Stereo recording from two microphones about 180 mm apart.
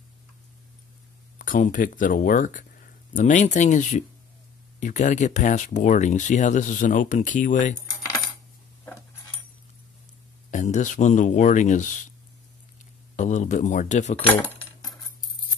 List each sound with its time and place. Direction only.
1.4 s speech: 50° left (ahead or behind)
10.5 s speech: 40° left (ahead or behind)
13.1 s speech: 40° left (ahead or behind)